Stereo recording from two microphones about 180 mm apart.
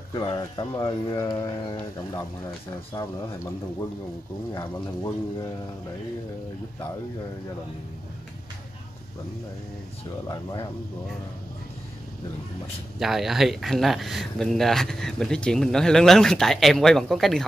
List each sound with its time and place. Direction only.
0.1 s speech: 20° left (ahead or behind)
4.6 s speech: 20° left (ahead or behind)
10.2 s speech: 20° left (ahead or behind)
13.0 s speech: centre (ahead or behind)